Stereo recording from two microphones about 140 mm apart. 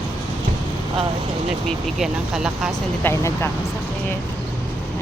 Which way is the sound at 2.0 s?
5° right (ahead or behind).